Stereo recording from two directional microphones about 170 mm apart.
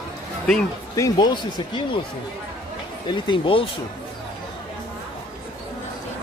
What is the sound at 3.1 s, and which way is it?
Speech, 25° left (ahead or behind).